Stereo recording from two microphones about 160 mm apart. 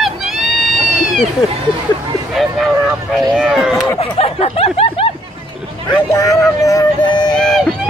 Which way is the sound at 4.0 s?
40° left (ahead or behind).